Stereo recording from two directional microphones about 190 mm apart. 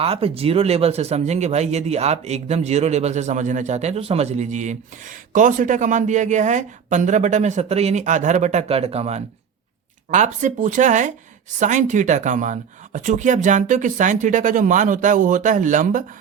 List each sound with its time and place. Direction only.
0.0 s speech: 30° right (ahead or behind)